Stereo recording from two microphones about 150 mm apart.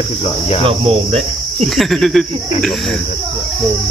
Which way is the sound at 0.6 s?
40° right (ahead or behind).